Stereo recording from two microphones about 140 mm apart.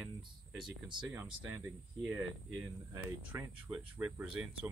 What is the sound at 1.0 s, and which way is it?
Speech, 10° right (ahead or behind).